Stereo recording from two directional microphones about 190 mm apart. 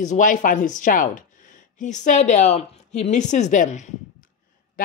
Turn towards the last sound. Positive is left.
turn(degrees=40)  # may be behind; listen again after turning